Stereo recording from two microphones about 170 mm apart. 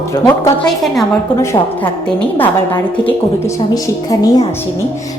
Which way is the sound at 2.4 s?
10° left (ahead or behind).